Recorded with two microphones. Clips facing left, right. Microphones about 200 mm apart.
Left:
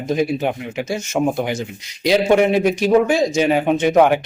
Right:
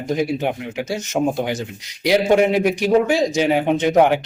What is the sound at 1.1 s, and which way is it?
Speech, 25° right (ahead or behind).